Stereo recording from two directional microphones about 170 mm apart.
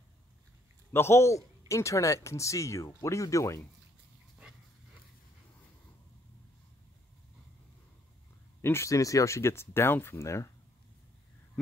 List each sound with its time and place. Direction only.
0.9 s speech: 15° left (ahead or behind)
8.5 s speech: 15° left (ahead or behind)